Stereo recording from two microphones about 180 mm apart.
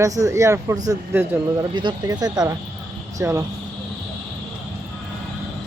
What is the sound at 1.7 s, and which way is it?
Speech, 25° right (ahead or behind).